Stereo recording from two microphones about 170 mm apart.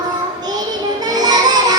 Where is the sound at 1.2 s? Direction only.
25° right (ahead or behind).